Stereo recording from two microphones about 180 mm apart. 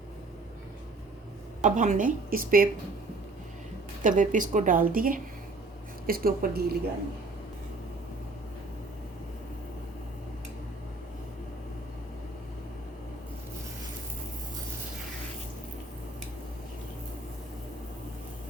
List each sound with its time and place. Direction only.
1.6 s speech: 45° right (ahead or behind)
4.0 s a woman's voice: 45° right (ahead or behind)